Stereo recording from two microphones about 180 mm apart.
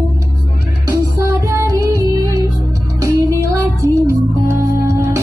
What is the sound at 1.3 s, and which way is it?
Music, 15° right (ahead or behind).